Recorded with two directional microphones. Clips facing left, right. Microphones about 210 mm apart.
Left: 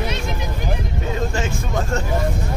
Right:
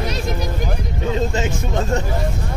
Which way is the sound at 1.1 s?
20° right (ahead or behind).